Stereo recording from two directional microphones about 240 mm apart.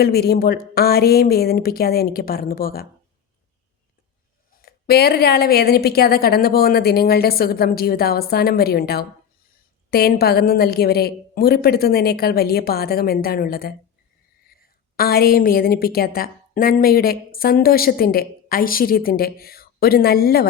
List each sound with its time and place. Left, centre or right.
0.0 s a woman's voice: left
4.5 s a woman's voice: left